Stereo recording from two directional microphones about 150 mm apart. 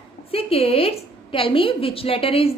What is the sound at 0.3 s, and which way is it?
A woman's voice, 40° left (ahead or behind).